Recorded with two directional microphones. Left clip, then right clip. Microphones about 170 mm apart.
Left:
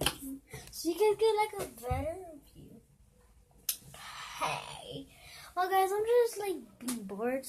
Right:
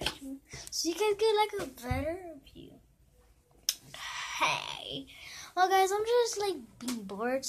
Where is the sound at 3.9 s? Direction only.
5° right (ahead or behind).